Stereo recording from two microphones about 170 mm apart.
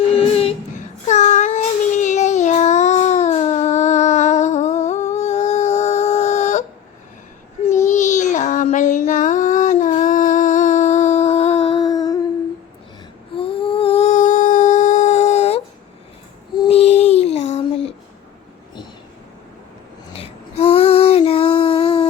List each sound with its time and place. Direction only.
0.1 s a sound: 35° left (ahead or behind)
1.0 s child singing: 45° left (ahead or behind)
7.9 s child singing: 45° left (ahead or behind); by 12.2 s 20° left (ahead or behind)
13.3 s humming: 30° left (ahead or behind)
16.6 s child singing: 35° left (ahead or behind)
20.1 s female singing: 35° left (ahead or behind)